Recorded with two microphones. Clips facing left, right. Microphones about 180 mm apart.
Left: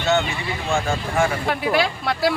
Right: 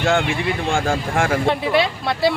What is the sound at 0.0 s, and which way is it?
Speech, 90° right.